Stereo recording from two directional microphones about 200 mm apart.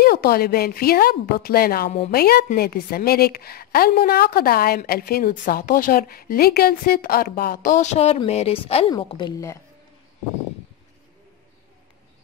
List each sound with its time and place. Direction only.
0.0 s a woman's voice: 50° left (ahead or behind); by 9.6 s 15° left (ahead or behind)